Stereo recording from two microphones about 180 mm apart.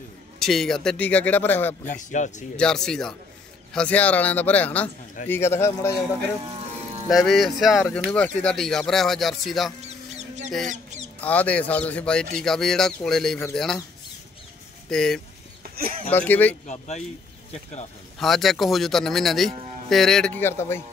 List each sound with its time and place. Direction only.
0.4 s speech: centre (ahead or behind)
2.0 s a man's voice: 45° left (ahead or behind)
2.5 s speech: 5° left (ahead or behind)
6.4 s vehicle: 35° right (ahead or behind)
7.1 s speech: centre (ahead or behind)
10.1 s a sound: 40° right (ahead or behind)
11.1 s speech: 10° left (ahead or behind)
14.9 s speech: centre (ahead or behind)
15.7 s speech: 55° right (ahead or behind)
16.1 s speech: 10° left (ahead or behind)
16.6 s speech: 40° left (ahead or behind)
18.2 s speech: centre (ahead or behind)